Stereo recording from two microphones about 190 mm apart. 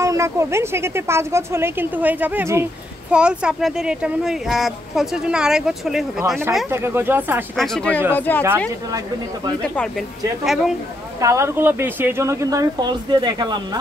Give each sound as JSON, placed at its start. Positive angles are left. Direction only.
{"t": 0.0, "sound": "speech", "side_deg": -15}
{"t": 7.5, "sound": "speech", "side_deg": 0}
{"t": 9.8, "sound": "speech", "side_deg": 0}
{"t": 11.1, "sound": "speech", "side_deg": -15}